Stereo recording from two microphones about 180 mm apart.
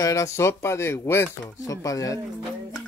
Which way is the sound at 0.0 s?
15° left (ahead or behind).